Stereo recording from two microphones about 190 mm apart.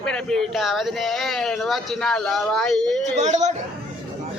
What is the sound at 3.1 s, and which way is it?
Speech, 40° right (ahead or behind).